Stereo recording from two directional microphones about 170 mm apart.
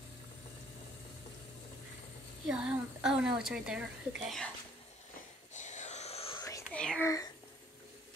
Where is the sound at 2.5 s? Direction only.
5° right (ahead or behind).